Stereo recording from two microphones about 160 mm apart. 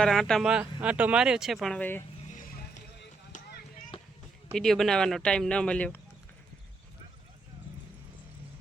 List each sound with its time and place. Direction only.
0.0 s speech: 5° left (ahead or behind)
2.3 s a sound: 60° left (ahead or behind); by 3.6 s 90° left
4.5 s speech: centre (ahead or behind)